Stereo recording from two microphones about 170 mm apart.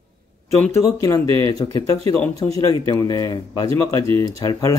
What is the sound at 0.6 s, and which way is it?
Speech, 15° left (ahead or behind).